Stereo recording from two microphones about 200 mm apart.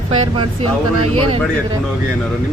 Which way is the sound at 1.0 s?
90° right.